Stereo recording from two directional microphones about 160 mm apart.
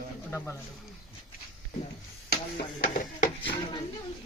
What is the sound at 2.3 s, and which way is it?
Speech, 80° left.